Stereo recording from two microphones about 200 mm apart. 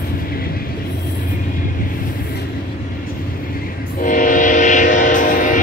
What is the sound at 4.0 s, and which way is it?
Train, 40° left (ahead or behind).